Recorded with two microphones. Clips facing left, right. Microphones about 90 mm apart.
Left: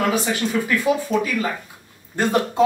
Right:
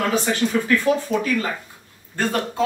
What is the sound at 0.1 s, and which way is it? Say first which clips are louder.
Speech: right 1 dB; 10° left (ahead or behind).